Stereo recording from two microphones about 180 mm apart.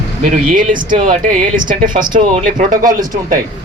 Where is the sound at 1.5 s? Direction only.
50° right (ahead or behind).